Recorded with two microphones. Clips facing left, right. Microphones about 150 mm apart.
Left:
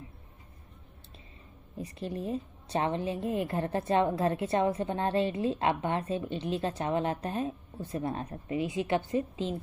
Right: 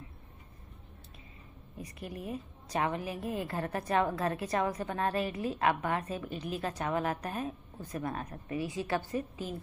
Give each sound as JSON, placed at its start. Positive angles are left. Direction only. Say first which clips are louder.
{"t": 1.8, "sound": "a woman's voice", "louder": "left 6 dB", "side_deg": 30}